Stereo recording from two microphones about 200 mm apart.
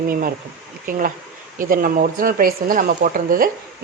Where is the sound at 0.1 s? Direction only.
45° right (ahead or behind).